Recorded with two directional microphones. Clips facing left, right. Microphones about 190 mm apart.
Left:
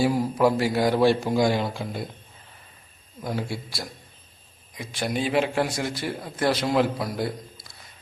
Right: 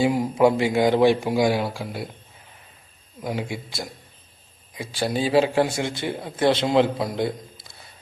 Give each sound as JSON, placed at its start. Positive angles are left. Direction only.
{"t": 0.0, "sound": "speech", "side_deg": -20}
{"t": 3.2, "sound": "speech", "side_deg": -15}
{"t": 4.8, "sound": "a man's voice", "side_deg": -30}